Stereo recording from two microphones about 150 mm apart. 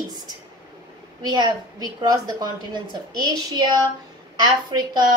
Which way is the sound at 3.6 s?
30° right (ahead or behind).